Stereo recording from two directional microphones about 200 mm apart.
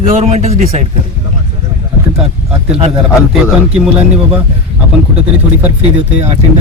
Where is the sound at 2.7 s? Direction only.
30° right (ahead or behind).